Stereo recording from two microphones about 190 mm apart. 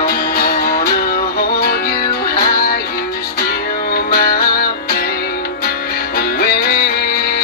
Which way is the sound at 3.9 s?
50° left (ahead or behind).